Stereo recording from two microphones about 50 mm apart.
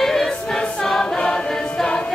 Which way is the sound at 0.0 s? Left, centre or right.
Centre.